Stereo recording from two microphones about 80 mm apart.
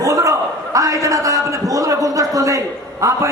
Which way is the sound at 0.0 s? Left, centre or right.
Right.